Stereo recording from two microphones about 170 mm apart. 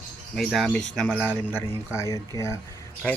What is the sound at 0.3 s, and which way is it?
Speech, centre (ahead or behind).